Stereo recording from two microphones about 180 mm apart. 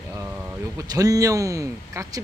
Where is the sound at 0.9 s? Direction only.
20° right (ahead or behind).